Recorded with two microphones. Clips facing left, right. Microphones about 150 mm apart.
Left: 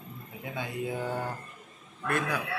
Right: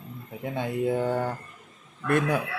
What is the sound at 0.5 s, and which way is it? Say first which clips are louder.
Speech: right 8 dB; 50° right (ahead or behind).